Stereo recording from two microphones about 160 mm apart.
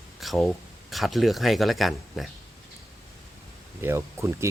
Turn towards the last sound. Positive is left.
turn(degrees=-15)  # may be behind; listen again after turning